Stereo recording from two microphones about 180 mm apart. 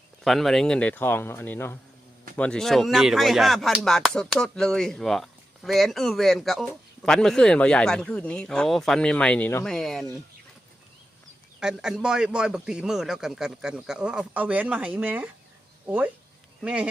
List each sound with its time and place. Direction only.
0.3 s speech: centre (ahead or behind)
11.6 s speech: 5° right (ahead or behind)
16.6 s speech: 5° right (ahead or behind)